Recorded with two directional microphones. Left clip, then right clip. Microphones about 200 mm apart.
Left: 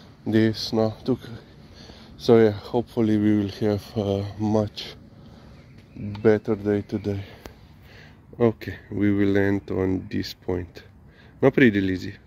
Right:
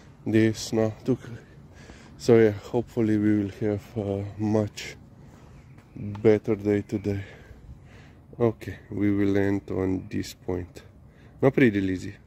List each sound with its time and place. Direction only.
0.2 s speech: 25° right (ahead or behind); by 4.4 s 5° right (ahead or behind)
4.4 s speech: 30° right (ahead or behind)
6.1 s speech: 30° right (ahead or behind)
8.4 s speech: 10° right (ahead or behind)